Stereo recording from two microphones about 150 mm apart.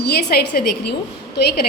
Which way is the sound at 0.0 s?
90° left.